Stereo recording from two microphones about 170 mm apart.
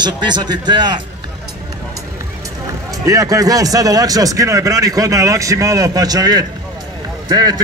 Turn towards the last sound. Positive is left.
turn(degrees=-25)  # may be behind; listen again after turning